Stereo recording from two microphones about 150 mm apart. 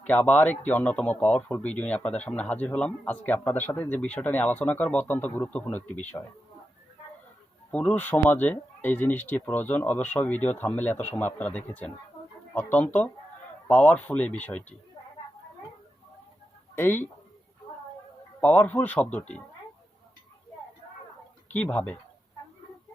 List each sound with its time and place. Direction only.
0.1 s a man's voice: 10° left (ahead or behind)
7.7 s a man's voice: 10° left (ahead or behind)
16.7 s a man's voice: 15° left (ahead or behind)
18.3 s a man's voice: 10° left (ahead or behind)
21.5 s a man's voice: 10° left (ahead or behind)